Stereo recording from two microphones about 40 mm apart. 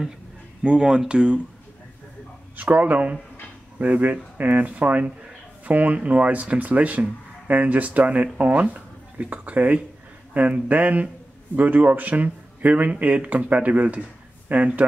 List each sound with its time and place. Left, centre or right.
0.7 s speech: right
2.5 s speech: right
5.7 s a man's voice: right